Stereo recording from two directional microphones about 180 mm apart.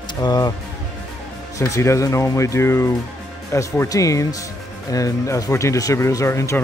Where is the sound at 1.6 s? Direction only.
15° left (ahead or behind).